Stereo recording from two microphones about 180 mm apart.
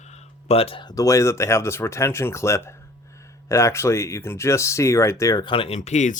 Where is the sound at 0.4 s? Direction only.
35° left (ahead or behind).